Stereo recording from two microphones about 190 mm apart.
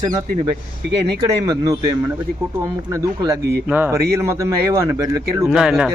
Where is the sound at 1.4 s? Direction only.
15° right (ahead or behind).